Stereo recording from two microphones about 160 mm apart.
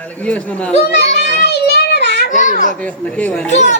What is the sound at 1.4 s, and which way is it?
Child singing, 90° left.